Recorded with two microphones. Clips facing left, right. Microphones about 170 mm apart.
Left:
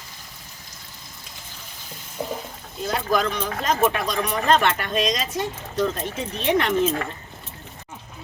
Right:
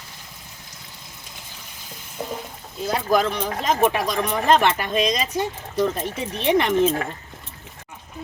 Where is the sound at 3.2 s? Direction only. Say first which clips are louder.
Right 1 dB; 15° right (ahead or behind).